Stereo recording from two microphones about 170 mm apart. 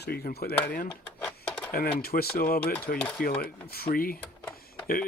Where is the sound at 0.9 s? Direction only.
5° left (ahead or behind).